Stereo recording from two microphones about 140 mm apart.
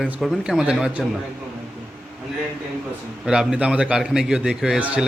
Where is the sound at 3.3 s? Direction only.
5° right (ahead or behind).